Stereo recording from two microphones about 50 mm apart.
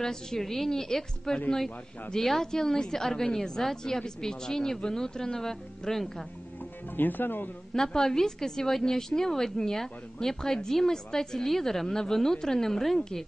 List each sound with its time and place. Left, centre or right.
0.0 s a woman's voice: centre
7.0 s speech: left
7.7 s a woman's voice: centre